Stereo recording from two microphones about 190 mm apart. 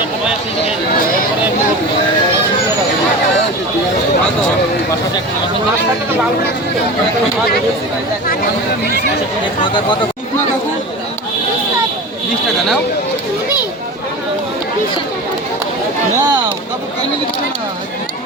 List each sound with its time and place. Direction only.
16.1 s speech: 20° right (ahead or behind)